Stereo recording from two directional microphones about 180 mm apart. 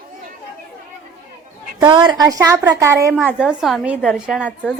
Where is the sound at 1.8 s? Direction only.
25° right (ahead or behind); by 4.5 s 5° right (ahead or behind).